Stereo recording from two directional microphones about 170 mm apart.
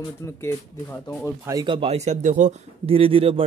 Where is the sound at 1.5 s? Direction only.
25° right (ahead or behind).